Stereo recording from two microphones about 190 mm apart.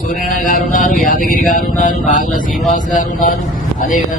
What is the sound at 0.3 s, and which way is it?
A man's voice, 45° left (ahead or behind).